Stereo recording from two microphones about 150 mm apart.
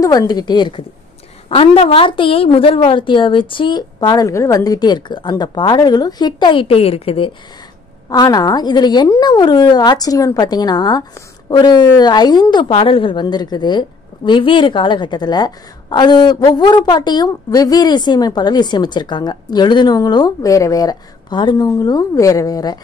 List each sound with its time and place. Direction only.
0.0 s a woman's voice: 25° left (ahead or behind)
8.1 s a woman's voice: 25° left (ahead or behind)